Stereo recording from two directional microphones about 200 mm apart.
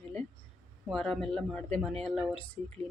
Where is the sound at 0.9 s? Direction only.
Centre (ahead or behind).